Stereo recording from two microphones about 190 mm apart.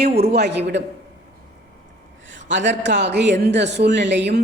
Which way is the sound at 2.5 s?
70° right (ahead or behind).